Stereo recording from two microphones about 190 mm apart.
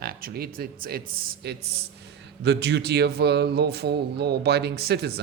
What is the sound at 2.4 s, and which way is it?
Speech, 65° right (ahead or behind).